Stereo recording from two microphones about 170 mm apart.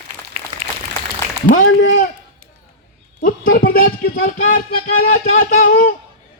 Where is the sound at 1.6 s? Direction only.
80° left.